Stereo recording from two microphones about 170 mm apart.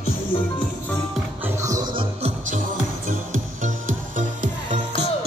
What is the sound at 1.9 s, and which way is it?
Music, 40° right (ahead or behind).